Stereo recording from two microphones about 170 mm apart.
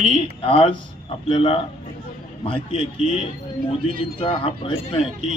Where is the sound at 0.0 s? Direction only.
35° left (ahead or behind).